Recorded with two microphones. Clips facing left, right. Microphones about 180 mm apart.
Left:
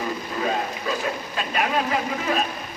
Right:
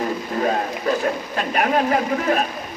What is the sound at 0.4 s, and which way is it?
A man's voice, 55° right (ahead or behind).